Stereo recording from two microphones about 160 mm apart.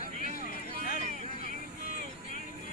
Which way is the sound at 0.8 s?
65° left (ahead or behind).